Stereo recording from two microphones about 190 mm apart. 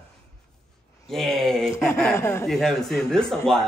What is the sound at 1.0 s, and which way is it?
Speech, centre (ahead or behind).